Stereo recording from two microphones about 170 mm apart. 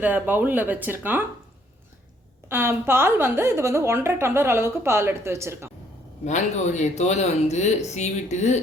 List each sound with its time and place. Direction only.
0.0 s a woman's voice: 10° right (ahead or behind)
2.5 s a woman's voice: 15° right (ahead or behind)
6.2 s speech: 45° left (ahead or behind)